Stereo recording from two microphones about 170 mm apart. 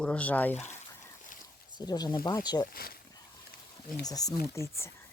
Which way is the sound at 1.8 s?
25° left (ahead or behind).